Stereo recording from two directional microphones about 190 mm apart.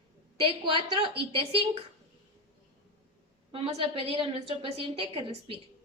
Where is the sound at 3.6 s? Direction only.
30° right (ahead or behind).